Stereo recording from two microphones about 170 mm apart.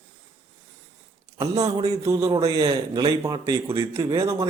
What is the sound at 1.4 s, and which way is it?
Speech, 20° right (ahead or behind).